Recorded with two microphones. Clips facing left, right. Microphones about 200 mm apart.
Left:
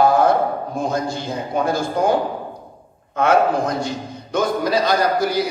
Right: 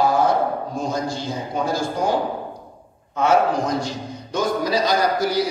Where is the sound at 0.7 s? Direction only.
55° left (ahead or behind).